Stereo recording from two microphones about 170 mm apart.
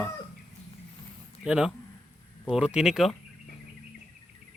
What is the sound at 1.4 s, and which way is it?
Speech, 5° right (ahead or behind).